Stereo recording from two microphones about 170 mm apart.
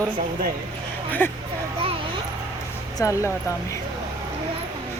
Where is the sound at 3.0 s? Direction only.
20° left (ahead or behind).